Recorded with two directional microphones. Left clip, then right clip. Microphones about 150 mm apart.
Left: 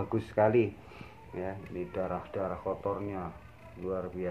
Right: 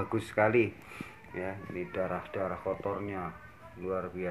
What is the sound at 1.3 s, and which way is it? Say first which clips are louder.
Speech: even; 15° right (ahead or behind).